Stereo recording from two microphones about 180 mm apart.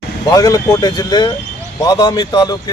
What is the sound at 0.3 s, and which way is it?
A man's voice, 20° left (ahead or behind).